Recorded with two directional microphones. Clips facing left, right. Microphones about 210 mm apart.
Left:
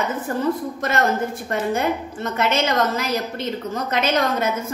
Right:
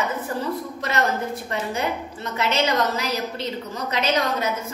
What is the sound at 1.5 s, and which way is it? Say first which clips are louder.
A woman's voice: left 6 dB; 50° left (ahead or behind).